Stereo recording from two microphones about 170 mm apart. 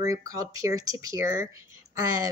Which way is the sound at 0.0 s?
20° right (ahead or behind).